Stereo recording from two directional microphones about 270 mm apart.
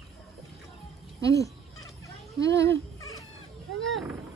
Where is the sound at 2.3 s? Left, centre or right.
Centre.